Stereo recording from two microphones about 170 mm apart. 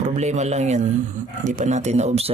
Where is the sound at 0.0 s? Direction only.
45° right (ahead or behind).